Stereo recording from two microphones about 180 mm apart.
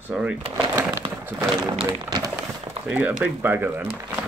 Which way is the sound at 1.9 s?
20° right (ahead or behind).